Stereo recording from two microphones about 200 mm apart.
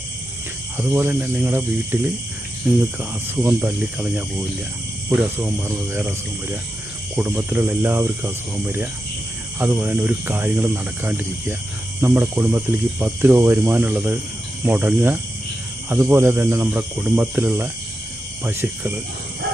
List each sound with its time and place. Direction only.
0.8 s speech: 10° right (ahead or behind)